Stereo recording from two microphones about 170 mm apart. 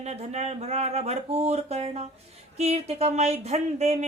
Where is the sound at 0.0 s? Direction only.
40° right (ahead or behind).